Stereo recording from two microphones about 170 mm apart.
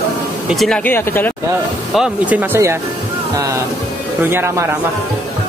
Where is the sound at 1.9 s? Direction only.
5° right (ahead or behind).